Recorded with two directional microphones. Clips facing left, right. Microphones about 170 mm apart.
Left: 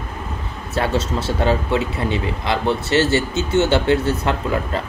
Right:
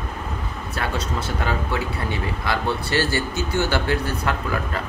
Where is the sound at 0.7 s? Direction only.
25° left (ahead or behind).